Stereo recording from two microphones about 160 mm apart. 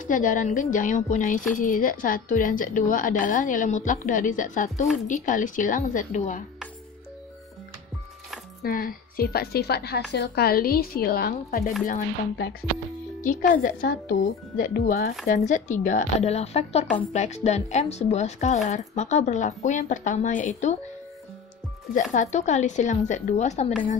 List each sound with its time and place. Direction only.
0.0 s a woman's voice: 55° left (ahead or behind)
8.6 s speech: 65° left (ahead or behind)
11.8 s a woman's voice: 55° left (ahead or behind)
15.2 s a woman's voice: 50° left (ahead or behind)
22.1 s a woman's voice: 45° left (ahead or behind)